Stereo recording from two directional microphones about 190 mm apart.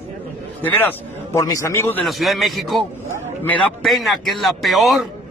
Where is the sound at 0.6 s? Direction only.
10° left (ahead or behind).